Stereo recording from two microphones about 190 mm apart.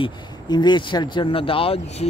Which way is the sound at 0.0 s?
25° left (ahead or behind).